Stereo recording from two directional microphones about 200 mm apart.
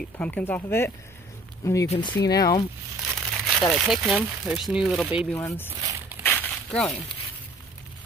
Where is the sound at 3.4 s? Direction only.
Centre (ahead or behind).